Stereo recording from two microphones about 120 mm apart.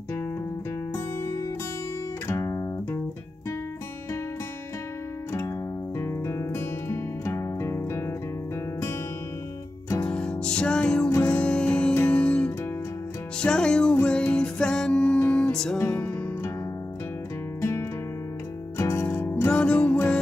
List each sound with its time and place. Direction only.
2.2 s guitar: 25° left (ahead or behind)
5.9 s music: 20° left (ahead or behind)
10.0 s music: 10° left (ahead or behind)
17.6 s music: 25° left (ahead or behind)
19.0 s music: 15° left (ahead or behind)